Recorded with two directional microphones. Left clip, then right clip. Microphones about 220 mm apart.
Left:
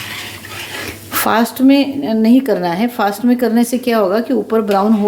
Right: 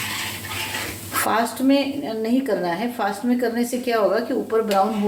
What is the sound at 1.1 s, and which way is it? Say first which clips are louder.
A woman's voice: left 6 dB; 55° left (ahead or behind).